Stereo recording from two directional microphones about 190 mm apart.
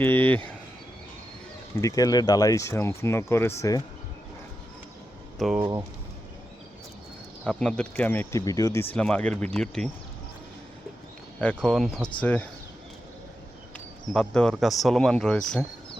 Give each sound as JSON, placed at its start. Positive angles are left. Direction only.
{"t": 0.0, "sound": "speech", "side_deg": 10}
{"t": 1.8, "sound": "speech", "side_deg": 20}
{"t": 5.4, "sound": "speech", "side_deg": -5}
{"t": 7.4, "sound": "speech", "side_deg": 5}
{"t": 11.3, "sound": "speech", "side_deg": 5}
{"t": 13.7, "sound": "speech", "side_deg": 5}